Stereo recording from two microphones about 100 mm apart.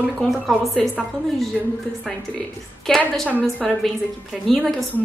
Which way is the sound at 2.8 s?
5° left (ahead or behind).